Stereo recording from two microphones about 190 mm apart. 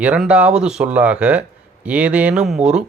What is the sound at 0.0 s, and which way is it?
Speech, 5° right (ahead or behind).